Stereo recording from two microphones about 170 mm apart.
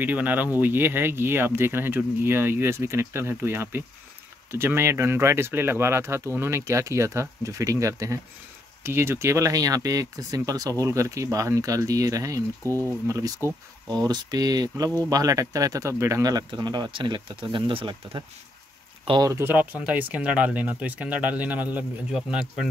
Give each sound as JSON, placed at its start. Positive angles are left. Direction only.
{"t": 0.0, "sound": "speech", "side_deg": -10}